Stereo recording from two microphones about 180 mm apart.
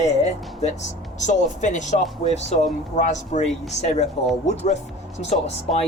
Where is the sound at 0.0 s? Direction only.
40° left (ahead or behind).